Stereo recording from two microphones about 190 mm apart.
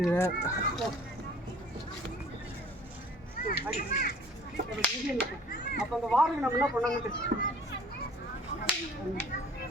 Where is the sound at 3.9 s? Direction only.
50° left (ahead or behind).